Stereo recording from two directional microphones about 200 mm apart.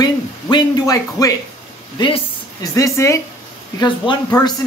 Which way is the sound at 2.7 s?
15° left (ahead or behind).